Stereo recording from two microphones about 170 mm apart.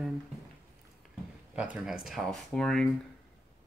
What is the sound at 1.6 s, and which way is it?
Speech, 5° right (ahead or behind).